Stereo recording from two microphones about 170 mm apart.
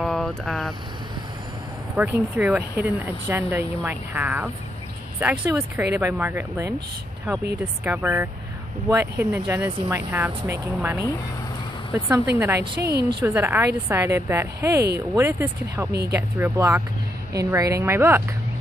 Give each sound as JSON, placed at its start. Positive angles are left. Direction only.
{"t": 0.0, "sound": "speech", "side_deg": 5}
{"t": 2.0, "sound": "speech", "side_deg": -10}
{"t": 7.8, "sound": "speech", "side_deg": -10}
{"t": 12.5, "sound": "a woman's voice", "side_deg": -75}
{"t": 13.2, "sound": "speech", "side_deg": -10}
{"t": 15.9, "sound": "a woman's voice", "side_deg": -75}
{"t": 16.2, "sound": "speech", "side_deg": -15}